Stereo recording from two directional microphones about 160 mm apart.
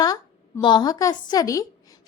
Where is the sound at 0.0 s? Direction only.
25° left (ahead or behind).